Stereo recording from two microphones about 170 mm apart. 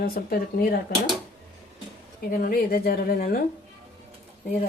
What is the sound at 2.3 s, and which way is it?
Speech, 60° left (ahead or behind).